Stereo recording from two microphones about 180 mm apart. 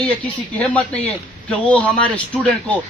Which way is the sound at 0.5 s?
10° left (ahead or behind).